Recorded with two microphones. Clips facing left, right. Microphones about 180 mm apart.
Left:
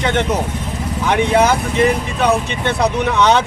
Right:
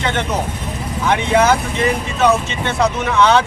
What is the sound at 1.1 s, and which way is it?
Speech, 15° left (ahead or behind).